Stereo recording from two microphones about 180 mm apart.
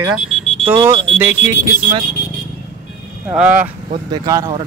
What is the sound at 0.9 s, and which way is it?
Speech, 30° right (ahead or behind).